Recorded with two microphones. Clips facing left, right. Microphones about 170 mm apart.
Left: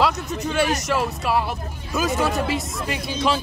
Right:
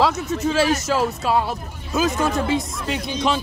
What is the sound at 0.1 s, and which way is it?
Speech, centre (ahead or behind).